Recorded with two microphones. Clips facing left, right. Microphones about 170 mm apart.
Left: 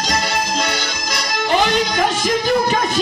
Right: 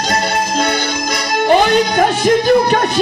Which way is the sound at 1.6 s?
60° right (ahead or behind).